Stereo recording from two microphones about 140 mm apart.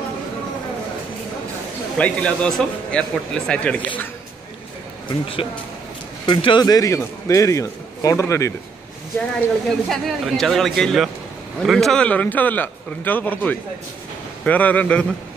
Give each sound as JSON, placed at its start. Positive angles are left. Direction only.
{"t": 2.0, "sound": "a man's voice", "side_deg": 10}
{"t": 6.2, "sound": "a man's voice", "side_deg": 35}
{"t": 9.7, "sound": "a man's voice", "side_deg": 0}